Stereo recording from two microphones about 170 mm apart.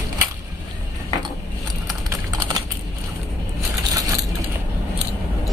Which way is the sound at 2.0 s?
20° right (ahead or behind).